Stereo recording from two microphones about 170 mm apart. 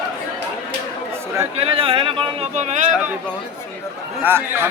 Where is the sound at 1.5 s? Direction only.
35° right (ahead or behind).